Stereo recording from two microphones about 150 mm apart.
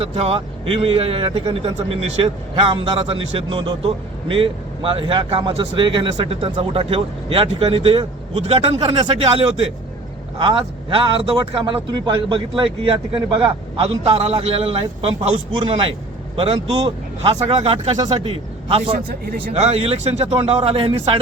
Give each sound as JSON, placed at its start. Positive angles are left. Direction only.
{"t": 0.0, "sound": "a man's voice", "side_deg": -45}
{"t": 8.8, "sound": "speech", "side_deg": -30}
{"t": 10.3, "sound": "speech", "side_deg": -35}
{"t": 18.9, "sound": "a man's voice", "side_deg": -70}
{"t": 19.5, "sound": "a man's voice", "side_deg": -45}